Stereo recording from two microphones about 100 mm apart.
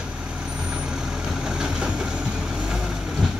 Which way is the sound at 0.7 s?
10° right (ahead or behind).